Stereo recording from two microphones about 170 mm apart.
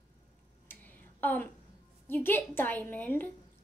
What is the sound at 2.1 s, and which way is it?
A woman's voice, 10° left (ahead or behind).